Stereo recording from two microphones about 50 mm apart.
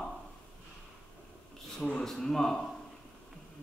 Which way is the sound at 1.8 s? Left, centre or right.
Centre.